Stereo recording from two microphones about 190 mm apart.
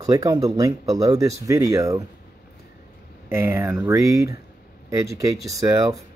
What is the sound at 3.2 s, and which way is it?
A man's voice, 10° right (ahead or behind).